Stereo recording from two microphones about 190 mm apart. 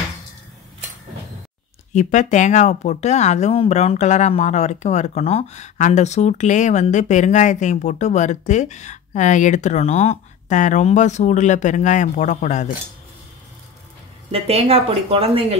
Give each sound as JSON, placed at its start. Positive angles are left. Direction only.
{"t": 1.9, "sound": "speech", "side_deg": 40}
{"t": 14.3, "sound": "speech", "side_deg": -30}